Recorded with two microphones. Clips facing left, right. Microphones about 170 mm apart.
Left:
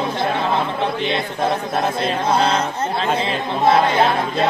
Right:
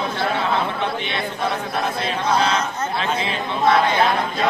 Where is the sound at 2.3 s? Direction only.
30° left (ahead or behind).